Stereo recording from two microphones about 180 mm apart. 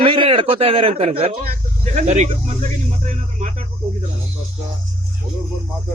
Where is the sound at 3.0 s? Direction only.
45° right (ahead or behind).